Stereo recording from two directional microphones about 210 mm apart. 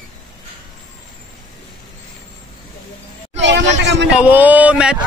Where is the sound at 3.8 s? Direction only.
55° right (ahead or behind).